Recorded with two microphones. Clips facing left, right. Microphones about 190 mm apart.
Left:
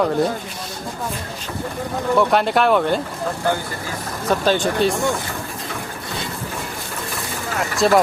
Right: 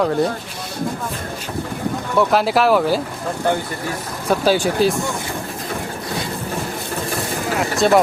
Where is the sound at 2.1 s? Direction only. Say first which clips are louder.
Right 1 dB; centre (ahead or behind).